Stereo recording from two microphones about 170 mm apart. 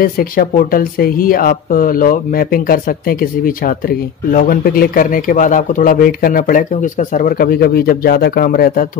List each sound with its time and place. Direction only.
0.0 s a man's voice: 60° left (ahead or behind)